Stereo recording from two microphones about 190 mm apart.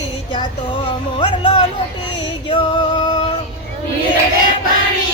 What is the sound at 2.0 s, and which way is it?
Music, 25° left (ahead or behind).